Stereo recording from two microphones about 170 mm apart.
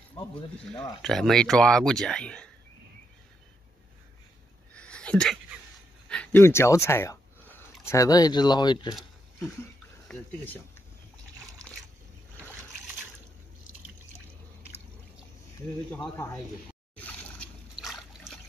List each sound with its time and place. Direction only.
1.0 s speech: centre (ahead or behind)
4.7 s a sound: 5° left (ahead or behind)
7.8 s speech: 15° left (ahead or behind)
10.0 s speech: 10° left (ahead or behind)
15.9 s speech: 10° left (ahead or behind)
16.9 s a sound: 10° left (ahead or behind)
17.7 s trickle: centre (ahead or behind)